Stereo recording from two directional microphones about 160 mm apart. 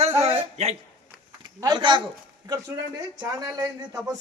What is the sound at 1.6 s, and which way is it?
Speech, 30° right (ahead or behind).